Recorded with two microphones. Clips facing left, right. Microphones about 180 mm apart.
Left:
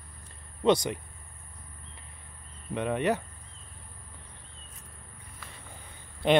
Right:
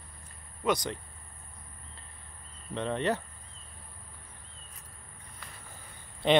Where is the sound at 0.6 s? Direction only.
25° left (ahead or behind).